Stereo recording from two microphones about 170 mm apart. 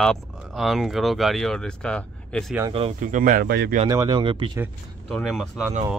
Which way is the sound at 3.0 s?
50° right (ahead or behind).